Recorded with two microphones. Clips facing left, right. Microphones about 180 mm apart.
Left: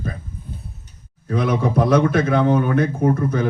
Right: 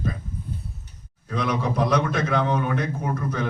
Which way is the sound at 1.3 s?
55° left (ahead or behind).